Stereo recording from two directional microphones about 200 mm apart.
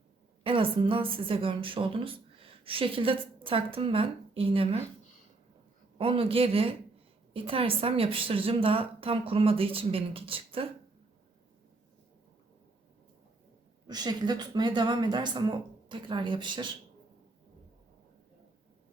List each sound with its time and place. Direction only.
0.4 s a woman's voice: 25° right (ahead or behind)
6.0 s a woman's voice: 25° right (ahead or behind)
13.8 s a woman's voice: 20° right (ahead or behind)